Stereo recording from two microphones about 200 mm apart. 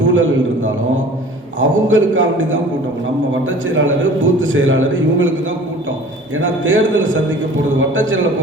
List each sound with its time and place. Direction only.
0.0 s a man's voice: 75° right (ahead or behind)
3.7 s a man's voice: 70° right (ahead or behind)
6.4 s a man's voice: 70° right (ahead or behind)